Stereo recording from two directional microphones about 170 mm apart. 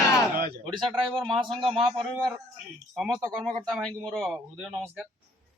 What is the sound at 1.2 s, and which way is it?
Speech, 30° right (ahead or behind).